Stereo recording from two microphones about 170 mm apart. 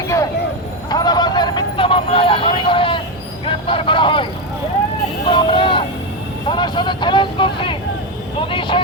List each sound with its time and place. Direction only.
0.9 s vehicle: 25° left (ahead or behind)
3.4 s speech: 30° left (ahead or behind)
5.2 s vehicle: 30° left (ahead or behind)
6.5 s speech: 25° left (ahead or behind)